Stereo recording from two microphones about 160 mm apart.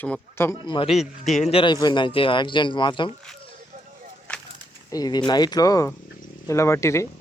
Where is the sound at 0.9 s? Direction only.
Centre (ahead or behind).